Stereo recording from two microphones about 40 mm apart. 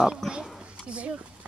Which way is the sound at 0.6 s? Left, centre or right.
Right.